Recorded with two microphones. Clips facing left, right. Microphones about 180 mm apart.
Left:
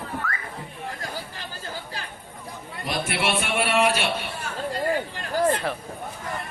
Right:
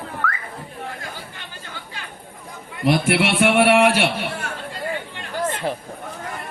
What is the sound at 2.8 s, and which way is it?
A man's voice, 65° right (ahead or behind).